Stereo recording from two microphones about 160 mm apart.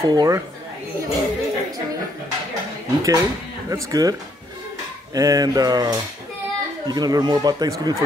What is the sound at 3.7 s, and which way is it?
Speech, 20° right (ahead or behind).